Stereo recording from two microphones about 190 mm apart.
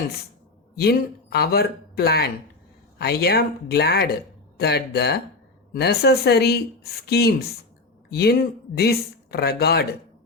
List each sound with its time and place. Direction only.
0.8 s speech: 55° left (ahead or behind)